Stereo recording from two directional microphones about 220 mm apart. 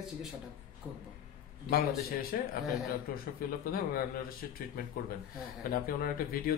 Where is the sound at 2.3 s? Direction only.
40° left (ahead or behind).